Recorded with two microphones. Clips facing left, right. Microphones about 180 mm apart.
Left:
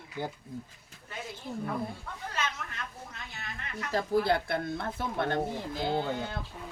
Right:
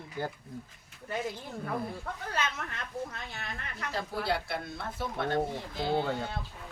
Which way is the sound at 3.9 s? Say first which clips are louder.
Left 6 dB; 50° left (ahead or behind).